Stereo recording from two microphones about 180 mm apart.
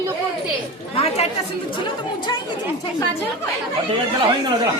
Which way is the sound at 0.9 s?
35° left (ahead or behind).